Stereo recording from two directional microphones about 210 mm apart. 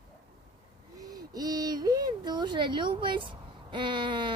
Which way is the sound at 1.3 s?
20° right (ahead or behind).